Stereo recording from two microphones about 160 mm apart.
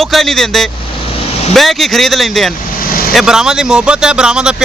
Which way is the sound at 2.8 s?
65° left (ahead or behind).